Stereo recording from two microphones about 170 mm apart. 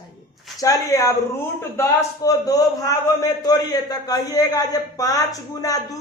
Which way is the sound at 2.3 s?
20° left (ahead or behind).